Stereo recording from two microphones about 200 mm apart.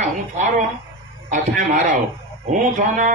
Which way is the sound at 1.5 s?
65° right (ahead or behind).